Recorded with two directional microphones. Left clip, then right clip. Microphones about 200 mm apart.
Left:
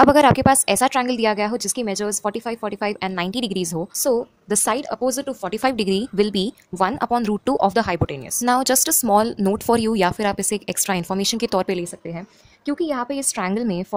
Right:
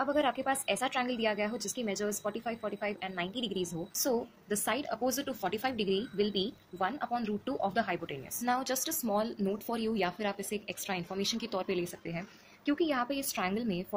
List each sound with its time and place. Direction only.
0.0 s a woman's voice: 45° left (ahead or behind)